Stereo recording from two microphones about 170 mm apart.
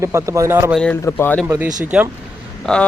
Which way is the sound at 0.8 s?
10° left (ahead or behind).